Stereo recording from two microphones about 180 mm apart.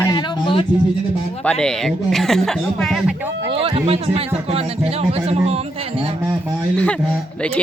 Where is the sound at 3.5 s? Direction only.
30° right (ahead or behind).